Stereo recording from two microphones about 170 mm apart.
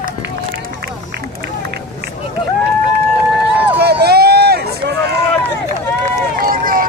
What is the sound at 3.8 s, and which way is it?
Run, 70° right (ahead or behind).